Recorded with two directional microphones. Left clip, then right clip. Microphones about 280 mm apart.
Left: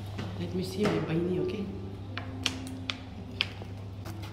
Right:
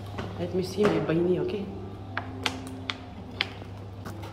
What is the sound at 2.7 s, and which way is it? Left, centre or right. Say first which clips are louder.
Music: right 2 dB; centre.